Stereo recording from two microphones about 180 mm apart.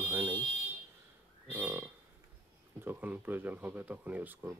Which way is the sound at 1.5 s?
10° right (ahead or behind).